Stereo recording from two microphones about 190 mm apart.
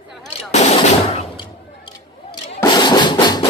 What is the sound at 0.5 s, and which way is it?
Gunshot, 35° left (ahead or behind).